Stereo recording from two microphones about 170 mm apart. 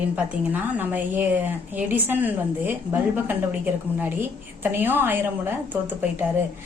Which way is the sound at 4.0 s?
10° right (ahead or behind).